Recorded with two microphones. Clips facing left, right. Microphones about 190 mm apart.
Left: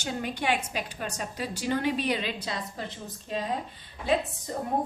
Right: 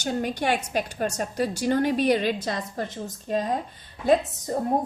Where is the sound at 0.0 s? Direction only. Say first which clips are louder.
Right 5 dB; 45° right (ahead or behind).